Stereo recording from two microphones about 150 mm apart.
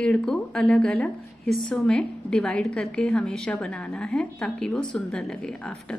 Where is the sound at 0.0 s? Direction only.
5° left (ahead or behind).